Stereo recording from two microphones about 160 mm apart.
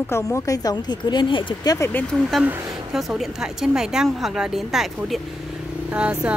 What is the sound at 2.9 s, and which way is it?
Speech, centre (ahead or behind).